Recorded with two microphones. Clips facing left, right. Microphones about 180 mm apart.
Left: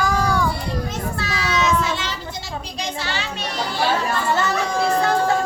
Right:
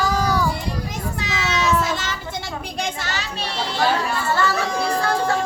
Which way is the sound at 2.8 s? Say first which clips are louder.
Even; 45° right (ahead or behind).